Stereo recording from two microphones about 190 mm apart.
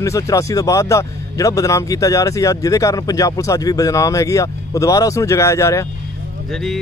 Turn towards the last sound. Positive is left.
turn(degrees=0)  # may be behind; listen again after turning